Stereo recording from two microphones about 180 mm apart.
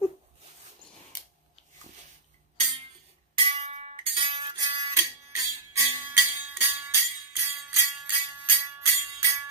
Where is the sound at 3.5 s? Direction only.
30° right (ahead or behind).